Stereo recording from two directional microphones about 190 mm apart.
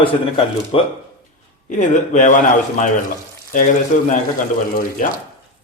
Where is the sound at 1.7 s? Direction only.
40° left (ahead or behind).